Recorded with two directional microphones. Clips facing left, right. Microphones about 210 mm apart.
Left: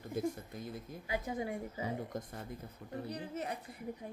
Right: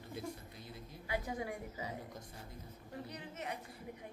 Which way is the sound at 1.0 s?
25° left (ahead or behind).